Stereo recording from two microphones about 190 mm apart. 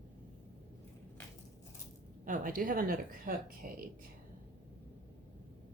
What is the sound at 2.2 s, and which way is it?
A woman's voice, 45° right (ahead or behind).